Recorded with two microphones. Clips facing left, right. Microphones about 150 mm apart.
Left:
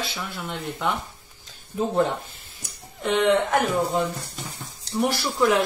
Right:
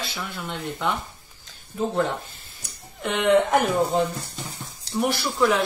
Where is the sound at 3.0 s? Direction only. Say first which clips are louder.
Left 4 dB; centre (ahead or behind).